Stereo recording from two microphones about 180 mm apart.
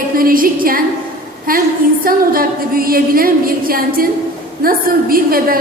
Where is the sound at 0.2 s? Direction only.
50° right (ahead or behind).